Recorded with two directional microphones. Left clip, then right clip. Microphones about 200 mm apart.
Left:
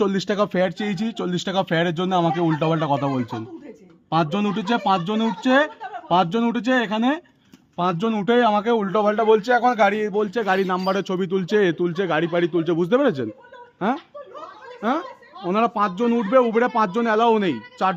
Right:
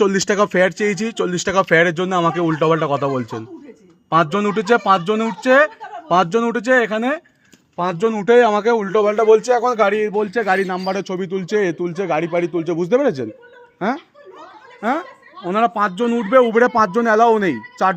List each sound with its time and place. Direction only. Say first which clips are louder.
0.0 s speech: right 5 dB; 5° right (ahead or behind)
9.0 s speech: right 5 dB; 5° left (ahead or behind)
10.5 s speech: even; 10° left (ahead or behind)
12.0 s speech: right 4 dB; 10° left (ahead or behind)
13.7 s speech: right 2 dB; 5° right (ahead or behind)